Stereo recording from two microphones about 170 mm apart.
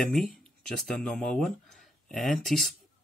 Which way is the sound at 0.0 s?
Centre (ahead or behind).